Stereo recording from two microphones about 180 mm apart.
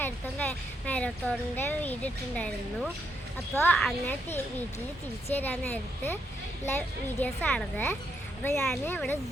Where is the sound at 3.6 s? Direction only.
5° left (ahead or behind).